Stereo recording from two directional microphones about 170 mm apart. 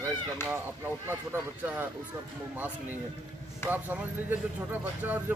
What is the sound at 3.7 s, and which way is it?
Speech, 10° right (ahead or behind).